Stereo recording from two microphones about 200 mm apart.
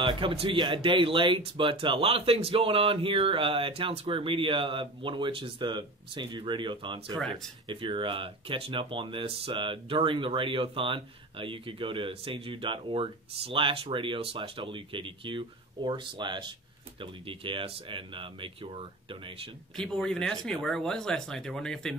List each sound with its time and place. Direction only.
0.0 s speech: 25° right (ahead or behind)
19.8 s speech: 5° left (ahead or behind)